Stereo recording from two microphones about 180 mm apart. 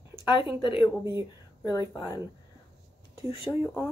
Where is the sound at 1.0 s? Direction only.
15° right (ahead or behind).